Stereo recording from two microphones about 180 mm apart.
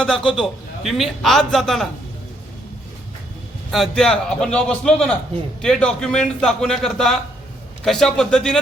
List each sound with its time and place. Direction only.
0.0 s a man's voice: 5° left (ahead or behind)
3.7 s a man's voice: centre (ahead or behind)